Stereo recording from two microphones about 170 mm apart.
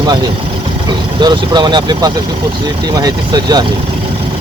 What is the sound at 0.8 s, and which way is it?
Speech, 25° right (ahead or behind).